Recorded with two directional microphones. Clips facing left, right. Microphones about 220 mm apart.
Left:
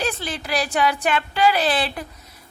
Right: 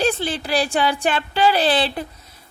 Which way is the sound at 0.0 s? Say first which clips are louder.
Right 5 dB; 30° right (ahead or behind).